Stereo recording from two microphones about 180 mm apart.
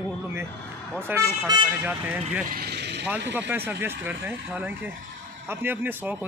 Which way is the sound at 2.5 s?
60° right (ahead or behind).